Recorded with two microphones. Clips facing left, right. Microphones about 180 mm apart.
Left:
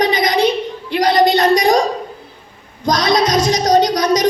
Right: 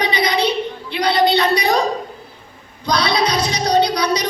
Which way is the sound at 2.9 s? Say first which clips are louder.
Left 3 dB; 45° left (ahead or behind).